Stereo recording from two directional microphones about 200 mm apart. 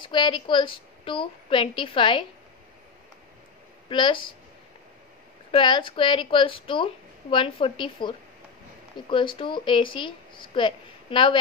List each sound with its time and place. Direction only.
0.0 s a woman's voice: 25° left (ahead or behind)
3.9 s a woman's voice: 25° left (ahead or behind)
5.5 s a woman's voice: 25° left (ahead or behind)